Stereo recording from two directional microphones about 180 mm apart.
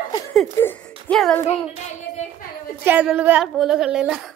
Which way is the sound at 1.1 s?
5° left (ahead or behind).